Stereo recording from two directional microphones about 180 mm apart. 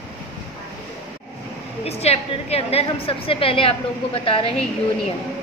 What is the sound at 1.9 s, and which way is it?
A woman's voice, 35° left (ahead or behind).